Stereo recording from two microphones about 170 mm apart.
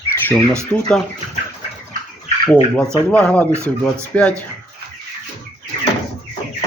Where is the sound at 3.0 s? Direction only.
5° left (ahead or behind).